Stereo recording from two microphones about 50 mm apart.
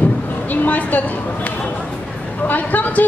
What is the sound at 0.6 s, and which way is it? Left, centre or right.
Speech, left.